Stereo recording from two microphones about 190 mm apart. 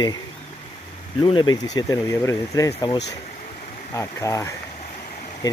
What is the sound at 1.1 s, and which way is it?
Speech, 25° left (ahead or behind).